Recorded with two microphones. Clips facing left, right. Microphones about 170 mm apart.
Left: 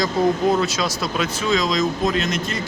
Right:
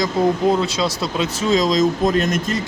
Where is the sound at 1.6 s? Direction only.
40° right (ahead or behind).